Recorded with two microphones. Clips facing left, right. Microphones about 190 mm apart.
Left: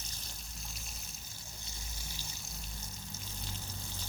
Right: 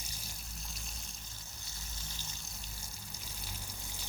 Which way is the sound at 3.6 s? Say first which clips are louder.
Left 3 dB; 10° right (ahead or behind).